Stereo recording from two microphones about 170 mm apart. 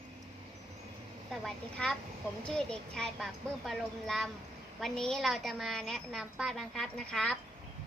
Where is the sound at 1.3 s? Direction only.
Centre (ahead or behind).